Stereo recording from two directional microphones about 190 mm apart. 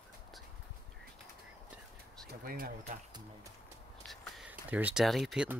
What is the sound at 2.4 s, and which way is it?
Speech, 45° right (ahead or behind).